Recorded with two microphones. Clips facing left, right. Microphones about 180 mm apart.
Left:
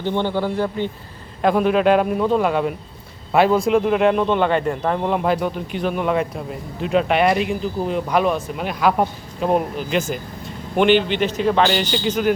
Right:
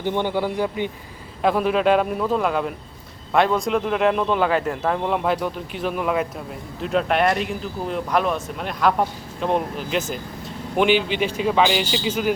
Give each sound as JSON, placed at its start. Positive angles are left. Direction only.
{"t": 0.0, "sound": "speech", "side_deg": -15}
{"t": 1.4, "sound": "speech", "side_deg": 0}